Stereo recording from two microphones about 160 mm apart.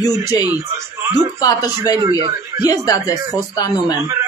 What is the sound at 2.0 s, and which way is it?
Speech, 30° right (ahead or behind).